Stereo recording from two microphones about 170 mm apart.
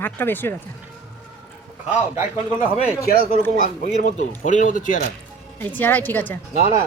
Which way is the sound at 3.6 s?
50° left (ahead or behind).